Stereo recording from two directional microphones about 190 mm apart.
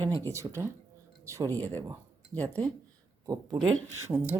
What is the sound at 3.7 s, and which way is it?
Speech, 90° right.